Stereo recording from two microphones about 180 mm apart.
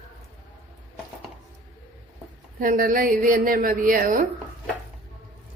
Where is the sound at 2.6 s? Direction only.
50° right (ahead or behind).